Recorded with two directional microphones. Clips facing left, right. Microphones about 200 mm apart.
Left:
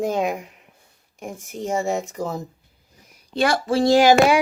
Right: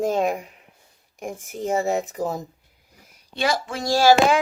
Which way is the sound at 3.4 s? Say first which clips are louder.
Left 3 dB; 55° left (ahead or behind).